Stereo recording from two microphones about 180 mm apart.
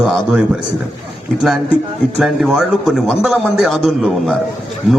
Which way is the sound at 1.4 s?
Centre (ahead or behind).